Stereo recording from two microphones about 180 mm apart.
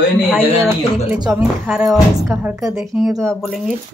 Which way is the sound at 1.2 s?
5° right (ahead or behind).